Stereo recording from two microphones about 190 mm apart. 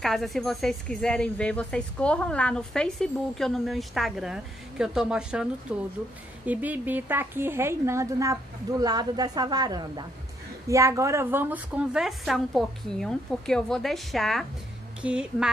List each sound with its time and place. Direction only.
0.0 s a woman's voice: centre (ahead or behind)